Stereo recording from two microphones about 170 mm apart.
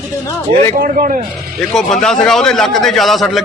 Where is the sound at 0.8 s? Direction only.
55° right (ahead or behind).